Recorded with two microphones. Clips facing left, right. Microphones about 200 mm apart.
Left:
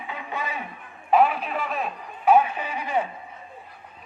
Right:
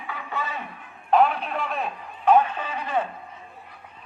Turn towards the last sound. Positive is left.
turn(degrees=10)  # may be behind; listen again after turning